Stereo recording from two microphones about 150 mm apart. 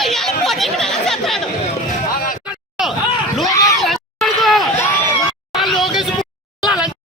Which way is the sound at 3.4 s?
20° left (ahead or behind).